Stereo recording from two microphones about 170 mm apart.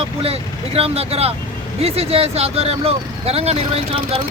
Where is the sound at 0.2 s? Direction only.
35° right (ahead or behind).